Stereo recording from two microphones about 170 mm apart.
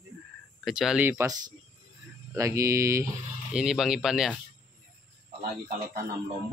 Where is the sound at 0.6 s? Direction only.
Centre (ahead or behind).